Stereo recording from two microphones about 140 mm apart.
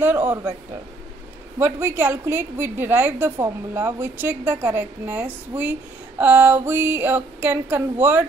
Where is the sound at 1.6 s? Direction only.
15° right (ahead or behind).